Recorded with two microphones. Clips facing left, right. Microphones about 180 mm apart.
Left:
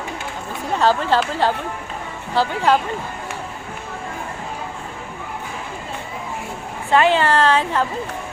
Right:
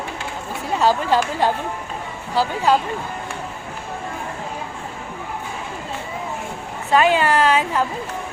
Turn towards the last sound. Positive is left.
turn(degrees=-10)  # may be behind; listen again after turning